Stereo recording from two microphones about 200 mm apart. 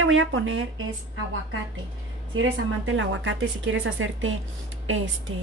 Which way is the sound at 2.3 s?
75° right (ahead or behind).